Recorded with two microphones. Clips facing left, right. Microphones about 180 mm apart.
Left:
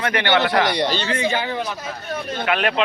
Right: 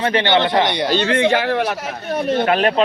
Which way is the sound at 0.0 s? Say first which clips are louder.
Right 3 dB; 25° right (ahead or behind).